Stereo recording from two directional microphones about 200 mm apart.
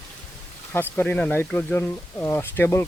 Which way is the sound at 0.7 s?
10° left (ahead or behind).